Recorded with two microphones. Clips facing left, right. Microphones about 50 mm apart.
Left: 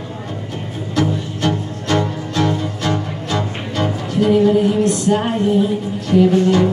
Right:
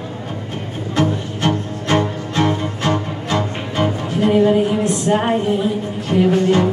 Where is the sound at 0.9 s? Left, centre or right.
Right.